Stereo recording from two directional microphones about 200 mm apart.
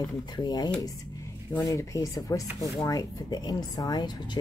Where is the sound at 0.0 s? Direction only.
20° left (ahead or behind).